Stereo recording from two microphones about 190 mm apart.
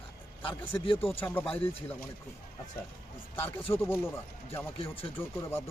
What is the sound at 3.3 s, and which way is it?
Speech, 10° left (ahead or behind).